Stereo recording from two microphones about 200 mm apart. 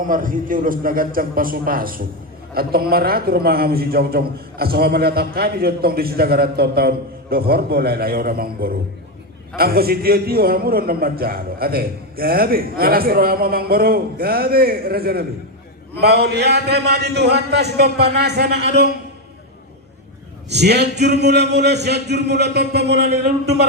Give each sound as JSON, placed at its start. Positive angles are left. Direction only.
{"t": 0.0, "sound": "a man's voice", "side_deg": -45}
{"t": 20.5, "sound": "a man's voice", "side_deg": -55}